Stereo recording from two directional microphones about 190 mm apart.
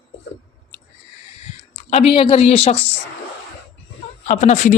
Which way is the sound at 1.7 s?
30° left (ahead or behind).